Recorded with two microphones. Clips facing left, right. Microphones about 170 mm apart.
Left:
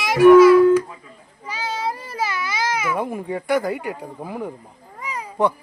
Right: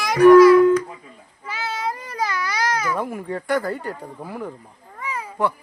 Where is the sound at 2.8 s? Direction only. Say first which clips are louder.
Left 1 dB; 5° left (ahead or behind).